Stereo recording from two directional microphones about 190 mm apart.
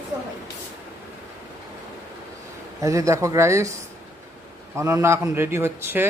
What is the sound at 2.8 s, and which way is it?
Speech, 15° right (ahead or behind).